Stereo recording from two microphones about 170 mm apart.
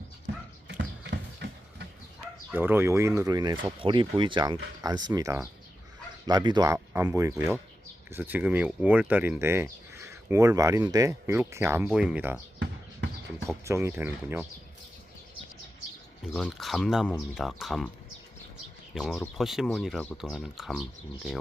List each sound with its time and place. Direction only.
0.3 s music: 90° right
0.7 s horse: 90° right
2.5 s speech: 10° right (ahead or behind)
13.7 s speech: 15° right (ahead or behind)
16.3 s speech: centre (ahead or behind)
18.9 s speech: 5° left (ahead or behind)